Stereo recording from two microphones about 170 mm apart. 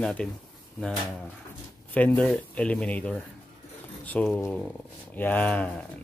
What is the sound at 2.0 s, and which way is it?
Speech, 10° left (ahead or behind).